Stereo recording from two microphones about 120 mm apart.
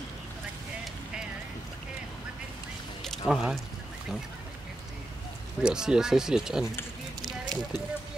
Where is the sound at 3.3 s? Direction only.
5° right (ahead or behind).